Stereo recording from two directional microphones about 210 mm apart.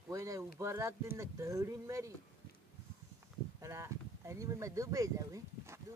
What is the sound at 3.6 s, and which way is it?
Speech, 15° right (ahead or behind).